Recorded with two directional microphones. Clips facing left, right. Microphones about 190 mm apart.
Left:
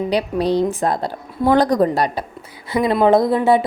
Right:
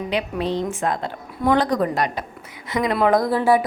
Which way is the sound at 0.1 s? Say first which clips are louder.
Left 4 dB; 35° left (ahead or behind).